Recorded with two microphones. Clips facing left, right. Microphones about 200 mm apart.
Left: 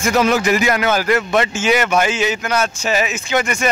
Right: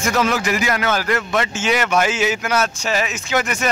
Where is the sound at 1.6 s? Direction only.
5° left (ahead or behind).